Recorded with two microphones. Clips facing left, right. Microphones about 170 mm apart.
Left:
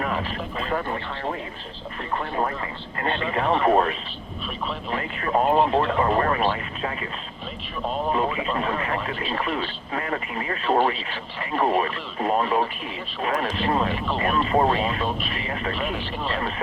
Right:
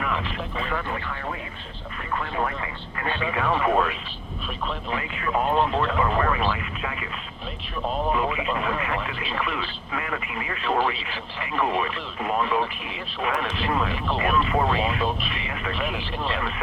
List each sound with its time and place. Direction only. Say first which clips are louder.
0.0 s speech: left 2 dB; 35° left (ahead or behind)
8.5 s speech: left 1 dB; 35° left (ahead or behind)
15.9 s speech: left 1 dB; centre (ahead or behind)